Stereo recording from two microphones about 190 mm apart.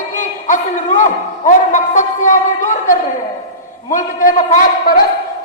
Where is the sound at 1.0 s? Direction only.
40° left (ahead or behind).